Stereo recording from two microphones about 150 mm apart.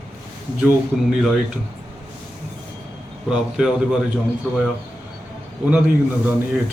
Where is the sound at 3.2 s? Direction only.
5° right (ahead or behind).